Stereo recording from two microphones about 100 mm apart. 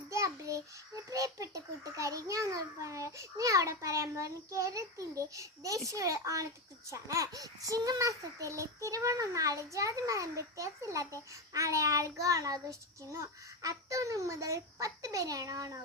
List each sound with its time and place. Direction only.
0.1 s child singing: 30° right (ahead or behind)
1.1 s a child's voice: 35° right (ahead or behind)